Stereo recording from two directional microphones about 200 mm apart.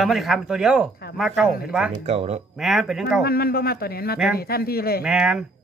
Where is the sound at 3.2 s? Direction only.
50° left (ahead or behind).